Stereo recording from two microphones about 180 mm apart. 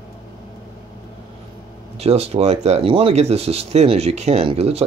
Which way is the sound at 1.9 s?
35° right (ahead or behind).